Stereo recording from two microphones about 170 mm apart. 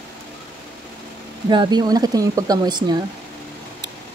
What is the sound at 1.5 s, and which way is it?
Speech, 25° right (ahead or behind).